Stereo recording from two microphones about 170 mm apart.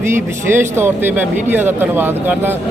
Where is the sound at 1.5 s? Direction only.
10° right (ahead or behind).